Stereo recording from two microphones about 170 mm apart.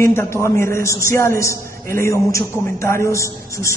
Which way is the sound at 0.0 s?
15° left (ahead or behind).